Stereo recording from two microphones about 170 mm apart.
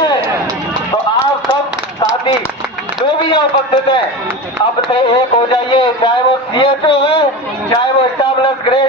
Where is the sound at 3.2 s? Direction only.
25° left (ahead or behind).